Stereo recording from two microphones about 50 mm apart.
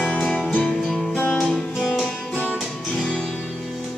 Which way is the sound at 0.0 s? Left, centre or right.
Left.